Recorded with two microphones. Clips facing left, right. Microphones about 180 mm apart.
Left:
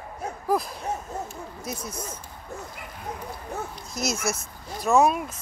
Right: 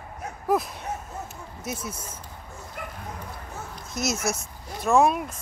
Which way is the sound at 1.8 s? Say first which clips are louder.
Left 2 dB; 5° right (ahead or behind).